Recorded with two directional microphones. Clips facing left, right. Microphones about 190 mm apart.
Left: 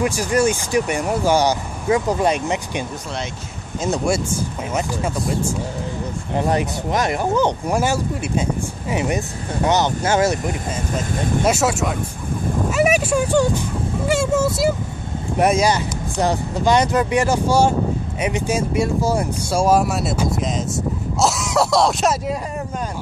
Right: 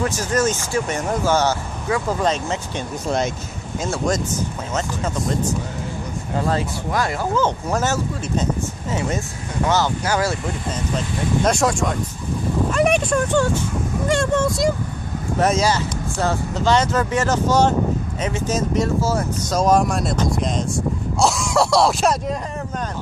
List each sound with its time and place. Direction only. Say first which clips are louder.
0.0 s speech: left 2 dB; 15° left (ahead or behind)
3.9 s speech: left 2 dB; 10° left (ahead or behind)
11.4 s speech: even; 5° left (ahead or behind)